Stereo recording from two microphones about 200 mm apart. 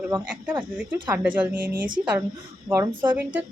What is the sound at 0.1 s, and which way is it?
A woman's voice, 5° right (ahead or behind).